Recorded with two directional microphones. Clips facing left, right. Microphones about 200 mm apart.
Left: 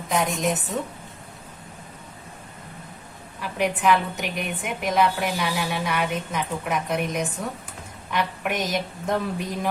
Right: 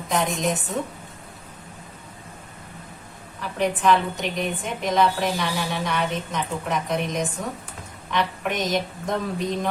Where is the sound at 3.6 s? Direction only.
10° left (ahead or behind).